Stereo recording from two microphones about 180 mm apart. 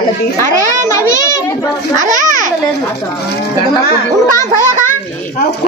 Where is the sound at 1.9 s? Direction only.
45° right (ahead or behind).